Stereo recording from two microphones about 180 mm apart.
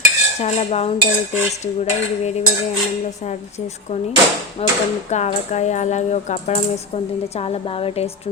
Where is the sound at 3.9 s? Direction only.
35° left (ahead or behind).